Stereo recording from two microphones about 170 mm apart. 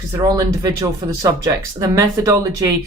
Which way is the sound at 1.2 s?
20° right (ahead or behind).